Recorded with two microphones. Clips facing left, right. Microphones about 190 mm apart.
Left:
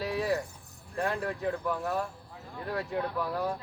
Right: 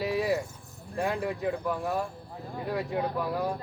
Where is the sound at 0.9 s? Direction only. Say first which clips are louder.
Right 2 dB; 5° right (ahead or behind).